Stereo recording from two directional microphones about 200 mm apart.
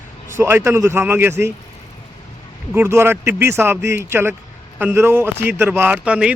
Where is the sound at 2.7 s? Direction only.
10° right (ahead or behind).